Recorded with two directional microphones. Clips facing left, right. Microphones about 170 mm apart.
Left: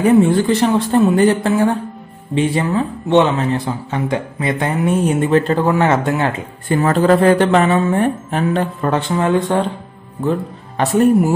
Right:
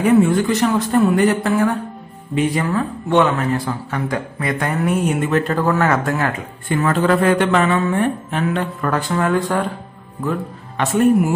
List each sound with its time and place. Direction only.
0.0 s speech: 30° left (ahead or behind)
6.7 s speech: 35° left (ahead or behind)
8.5 s speech: 25° left (ahead or behind)
10.8 s speech: 35° left (ahead or behind)